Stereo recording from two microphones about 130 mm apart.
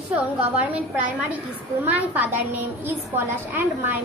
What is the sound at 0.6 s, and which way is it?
A child's voice, 10° right (ahead or behind).